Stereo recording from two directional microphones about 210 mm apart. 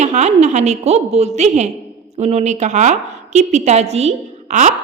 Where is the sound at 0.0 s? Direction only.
35° right (ahead or behind).